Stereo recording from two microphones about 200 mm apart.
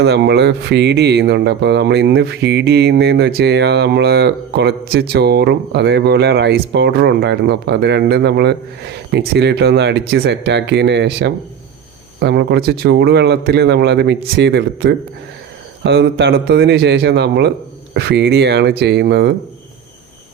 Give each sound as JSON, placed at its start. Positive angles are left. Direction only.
{"t": 0.0, "sound": "speech", "side_deg": -60}